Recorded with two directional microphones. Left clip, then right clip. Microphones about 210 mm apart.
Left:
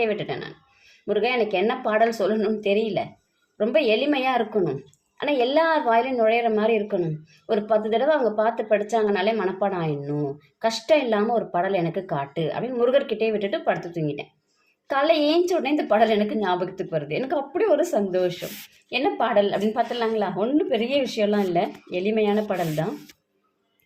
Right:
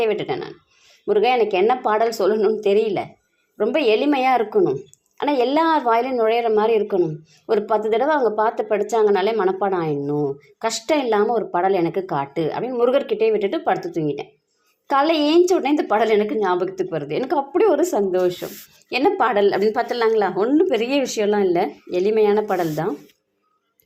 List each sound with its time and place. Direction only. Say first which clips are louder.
0.0 s a woman's voice: right 4 dB; 25° right (ahead or behind)